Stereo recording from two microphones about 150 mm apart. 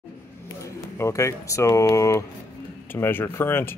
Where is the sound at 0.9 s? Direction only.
20° left (ahead or behind).